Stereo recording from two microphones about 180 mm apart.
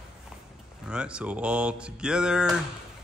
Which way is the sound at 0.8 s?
5° right (ahead or behind).